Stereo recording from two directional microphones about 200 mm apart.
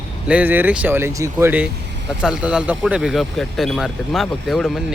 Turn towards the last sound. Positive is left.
turn(degrees=0)  # may be behind; listen again after turning